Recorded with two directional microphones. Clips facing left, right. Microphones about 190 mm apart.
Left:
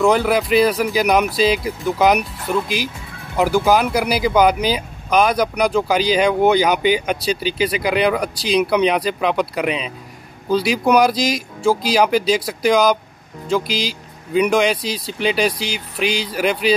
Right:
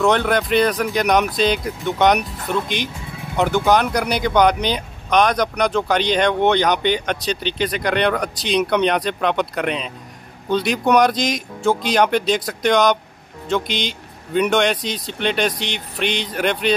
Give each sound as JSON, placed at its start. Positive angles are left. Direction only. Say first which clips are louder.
{"t": 0.0, "sound": "speech", "louder": "left 2 dB", "side_deg": 5}